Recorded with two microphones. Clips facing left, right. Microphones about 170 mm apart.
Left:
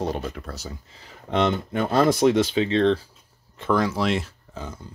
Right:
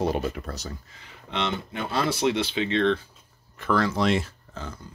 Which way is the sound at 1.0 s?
45° left (ahead or behind).